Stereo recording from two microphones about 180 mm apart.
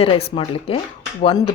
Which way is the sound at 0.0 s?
30° left (ahead or behind).